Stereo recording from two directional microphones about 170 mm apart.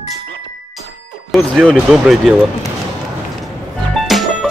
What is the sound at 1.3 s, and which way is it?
Speech, centre (ahead or behind).